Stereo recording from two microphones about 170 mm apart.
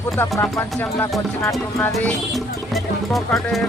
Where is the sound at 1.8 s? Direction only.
5° left (ahead or behind).